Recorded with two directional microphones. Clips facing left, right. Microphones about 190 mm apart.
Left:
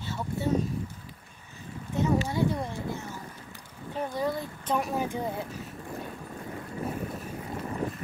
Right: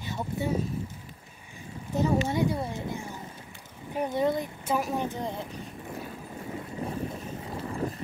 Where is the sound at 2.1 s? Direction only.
20° right (ahead or behind).